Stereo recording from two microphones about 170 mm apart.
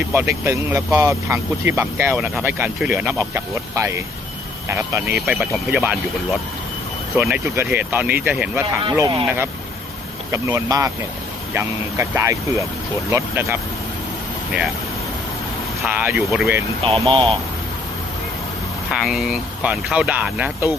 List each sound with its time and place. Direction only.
0.1 s speech: 15° right (ahead or behind)
2.1 s speech: centre (ahead or behind)
2.4 s speech: 15° right (ahead or behind)
5.1 s speech: centre (ahead or behind)
7.1 s speech: 10° right (ahead or behind)
9.0 s speech: 25° right (ahead or behind)
10.3 s speech: 20° right (ahead or behind)
15.8 s speech: 10° right (ahead or behind)
17.0 s speech: 30° right (ahead or behind)
18.9 s speech: centre (ahead or behind)